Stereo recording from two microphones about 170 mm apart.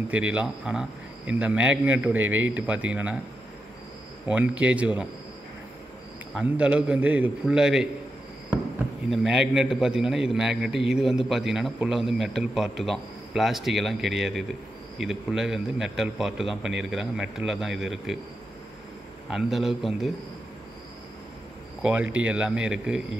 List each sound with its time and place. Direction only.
0.1 s speech: 5° right (ahead or behind)
4.3 s speech: 5° right (ahead or behind)
6.3 s speech: 10° right (ahead or behind)
9.1 s a man's voice: centre (ahead or behind)
19.2 s a man's voice: 5° right (ahead or behind)
21.9 s speech: 10° right (ahead or behind)